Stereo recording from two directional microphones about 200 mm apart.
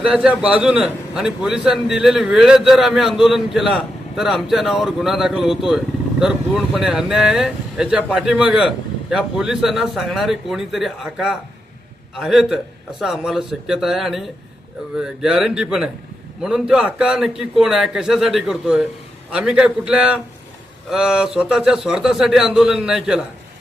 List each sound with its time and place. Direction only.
0.0 s a man's voice: 5° right (ahead or behind)